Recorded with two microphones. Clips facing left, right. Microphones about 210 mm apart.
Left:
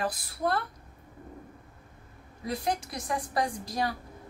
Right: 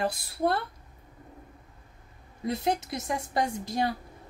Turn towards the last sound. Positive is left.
turn(degrees=-25)  # may be behind; listen again after turning